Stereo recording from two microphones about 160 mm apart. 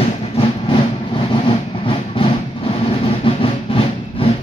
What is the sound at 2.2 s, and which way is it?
Train, 30° left (ahead or behind).